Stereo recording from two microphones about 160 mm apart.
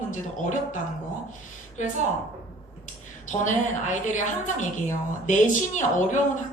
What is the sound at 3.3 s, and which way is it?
A woman's voice, 50° left (ahead or behind).